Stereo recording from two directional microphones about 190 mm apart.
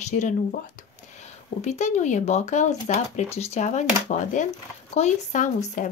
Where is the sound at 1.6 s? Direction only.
35° left (ahead or behind).